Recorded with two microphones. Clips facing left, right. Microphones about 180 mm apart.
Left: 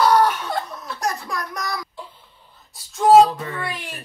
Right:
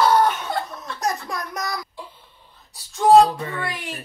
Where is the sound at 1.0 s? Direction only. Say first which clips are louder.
Even; 20° right (ahead or behind).